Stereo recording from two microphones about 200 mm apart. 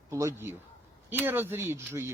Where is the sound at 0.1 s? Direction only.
15° right (ahead or behind).